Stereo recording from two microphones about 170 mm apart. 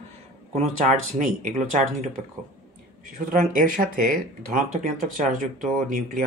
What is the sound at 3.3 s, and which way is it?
Speech, 55° right (ahead or behind).